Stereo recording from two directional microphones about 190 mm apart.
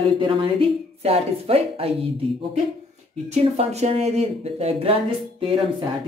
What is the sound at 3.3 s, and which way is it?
Speech, 35° right (ahead or behind).